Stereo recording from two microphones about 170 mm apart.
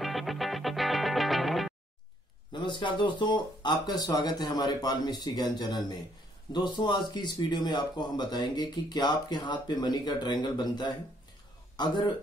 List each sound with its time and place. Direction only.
0.0 s music: centre (ahead or behind)
2.5 s speech: 25° left (ahead or behind)